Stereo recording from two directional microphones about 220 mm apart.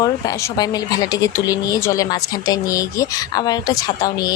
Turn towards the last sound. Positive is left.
turn(degrees=15)  # may be behind; listen again after turning